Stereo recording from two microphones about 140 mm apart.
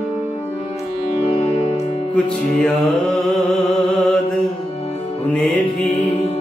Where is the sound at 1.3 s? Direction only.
45° left (ahead or behind).